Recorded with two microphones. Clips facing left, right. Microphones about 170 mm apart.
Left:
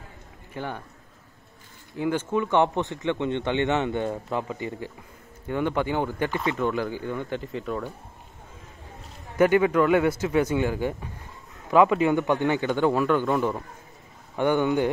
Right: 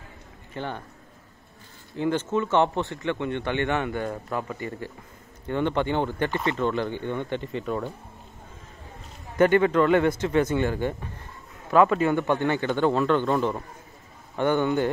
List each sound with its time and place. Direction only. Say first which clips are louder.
0.6 s a man's voice: even; 10° left (ahead or behind)
2.0 s a man's voice: even; 10° left (ahead or behind)
9.4 s a man's voice: even; 10° left (ahead or behind)